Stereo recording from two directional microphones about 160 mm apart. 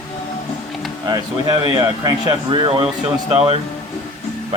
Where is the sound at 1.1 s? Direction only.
25° right (ahead or behind).